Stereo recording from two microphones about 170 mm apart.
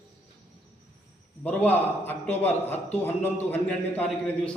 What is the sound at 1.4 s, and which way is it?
A man's voice, 10° left (ahead or behind).